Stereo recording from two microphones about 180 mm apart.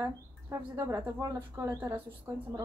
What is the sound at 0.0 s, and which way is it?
Speech, 15° right (ahead or behind).